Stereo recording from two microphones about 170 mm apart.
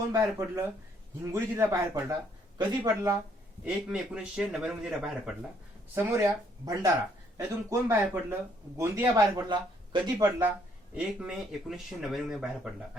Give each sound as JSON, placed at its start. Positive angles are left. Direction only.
{"t": 0.1, "sound": "speech", "side_deg": -20}
{"t": 3.6, "sound": "a man's voice", "side_deg": -5}
{"t": 5.9, "sound": "speech", "side_deg": -15}
{"t": 10.9, "sound": "a man's voice", "side_deg": -5}